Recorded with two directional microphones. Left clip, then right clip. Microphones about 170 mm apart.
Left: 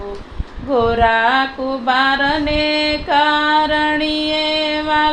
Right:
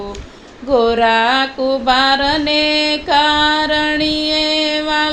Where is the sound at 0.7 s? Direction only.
40° right (ahead or behind).